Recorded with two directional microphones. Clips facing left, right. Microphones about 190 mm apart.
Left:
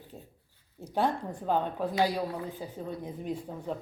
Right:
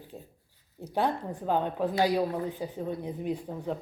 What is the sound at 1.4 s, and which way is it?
Speech, 15° right (ahead or behind).